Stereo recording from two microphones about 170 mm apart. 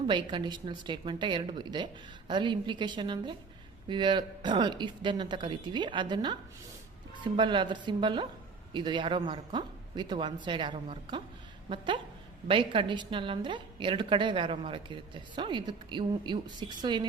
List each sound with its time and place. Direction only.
0.1 s a woman's voice: 30° right (ahead or behind)
7.3 s a woman's voice: 30° right (ahead or behind)